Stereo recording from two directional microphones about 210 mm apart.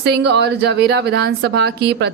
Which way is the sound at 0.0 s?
55° right (ahead or behind).